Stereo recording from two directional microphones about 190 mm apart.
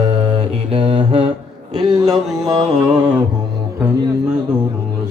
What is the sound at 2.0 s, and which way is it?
Music, centre (ahead or behind).